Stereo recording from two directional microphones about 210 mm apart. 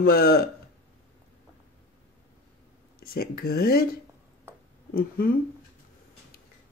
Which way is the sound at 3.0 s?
45° left (ahead or behind).